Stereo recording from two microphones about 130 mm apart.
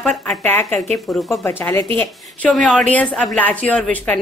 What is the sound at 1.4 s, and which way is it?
A woman's voice, 20° left (ahead or behind).